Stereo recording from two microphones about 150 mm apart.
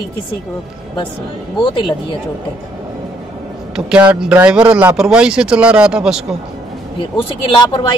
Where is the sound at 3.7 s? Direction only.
10° right (ahead or behind).